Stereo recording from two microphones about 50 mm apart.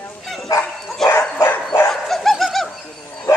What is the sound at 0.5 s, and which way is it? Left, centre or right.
Dog, left.